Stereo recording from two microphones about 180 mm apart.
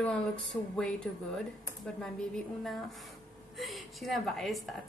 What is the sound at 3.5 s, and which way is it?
A woman's voice, centre (ahead or behind).